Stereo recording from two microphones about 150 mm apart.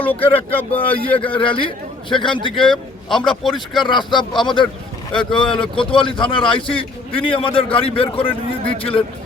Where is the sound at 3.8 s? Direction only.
30° left (ahead or behind).